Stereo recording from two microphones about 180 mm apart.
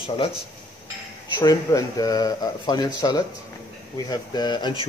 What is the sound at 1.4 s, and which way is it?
Speech, 20° left (ahead or behind).